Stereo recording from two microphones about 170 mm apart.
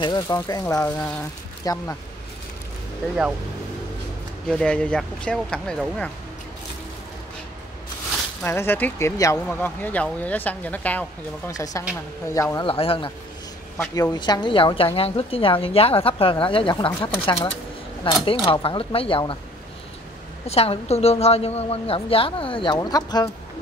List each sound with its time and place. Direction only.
0.0 s speech: 25° left (ahead or behind)
4.5 s speech: 5° left (ahead or behind)
8.5 s speech: 15° left (ahead or behind)
11.5 s speech: 20° left (ahead or behind)
12.6 s a woman's voice: 35° left (ahead or behind)
14.1 s a woman's voice: 25° left (ahead or behind)
20.4 s a woman's voice: 35° left (ahead or behind)